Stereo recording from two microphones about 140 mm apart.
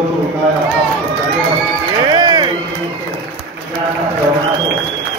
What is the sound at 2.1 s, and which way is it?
Run, 35° right (ahead or behind).